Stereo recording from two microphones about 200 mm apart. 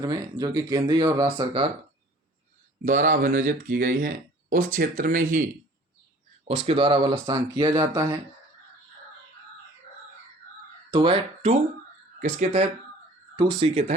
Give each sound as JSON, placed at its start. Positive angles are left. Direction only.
{"t": 0.0, "sound": "speech", "side_deg": -20}
{"t": 2.8, "sound": "speech", "side_deg": -40}
{"t": 6.6, "sound": "speech", "side_deg": -30}
{"t": 10.9, "sound": "speech", "side_deg": -25}
{"t": 13.3, "sound": "speech", "side_deg": -20}